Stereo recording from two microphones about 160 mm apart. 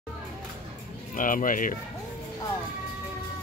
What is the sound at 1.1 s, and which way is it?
Speech, 55° left (ahead or behind).